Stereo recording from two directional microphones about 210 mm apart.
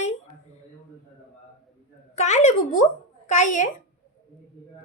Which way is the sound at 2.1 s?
35° left (ahead or behind).